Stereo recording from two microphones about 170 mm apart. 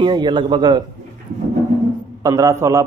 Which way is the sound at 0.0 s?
30° right (ahead or behind).